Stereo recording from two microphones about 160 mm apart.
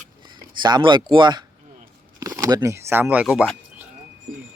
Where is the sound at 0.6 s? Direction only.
30° right (ahead or behind); by 3.4 s 10° right (ahead or behind).